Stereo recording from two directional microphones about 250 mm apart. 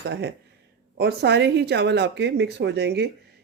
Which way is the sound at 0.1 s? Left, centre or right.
Right.